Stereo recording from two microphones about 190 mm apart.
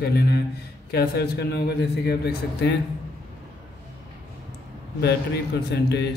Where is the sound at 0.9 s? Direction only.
60° left (ahead or behind).